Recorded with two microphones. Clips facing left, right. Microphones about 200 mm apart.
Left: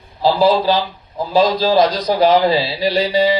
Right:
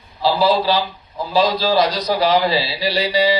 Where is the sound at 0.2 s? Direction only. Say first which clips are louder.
Left 3 dB; 45° left (ahead or behind).